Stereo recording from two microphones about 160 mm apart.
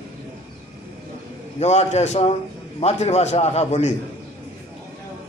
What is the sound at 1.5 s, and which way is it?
A man's voice, 45° left (ahead or behind).